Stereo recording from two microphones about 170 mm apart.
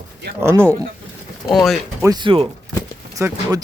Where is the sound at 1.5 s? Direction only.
Centre (ahead or behind).